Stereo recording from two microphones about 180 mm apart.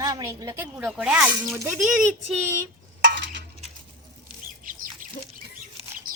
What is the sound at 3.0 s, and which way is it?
Stir, 75° right (ahead or behind).